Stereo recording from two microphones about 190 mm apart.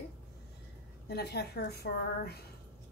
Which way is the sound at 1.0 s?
60° left (ahead or behind).